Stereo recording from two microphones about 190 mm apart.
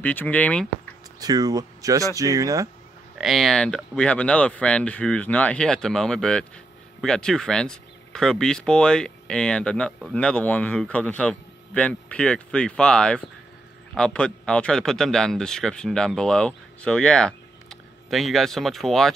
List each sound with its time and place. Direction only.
0.0 s speech: 10° left (ahead or behind)
1.2 s speech: 20° right (ahead or behind)
3.2 s speech: centre (ahead or behind)